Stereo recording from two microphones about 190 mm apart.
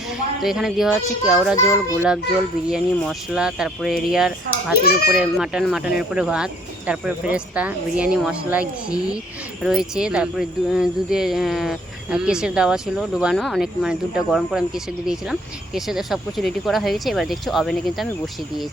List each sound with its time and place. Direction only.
0.4 s speech: centre (ahead or behind)
2.6 s speech: centre (ahead or behind)
4.8 s a child's voice: 55° left (ahead or behind)
5.1 s speech: 5° right (ahead or behind)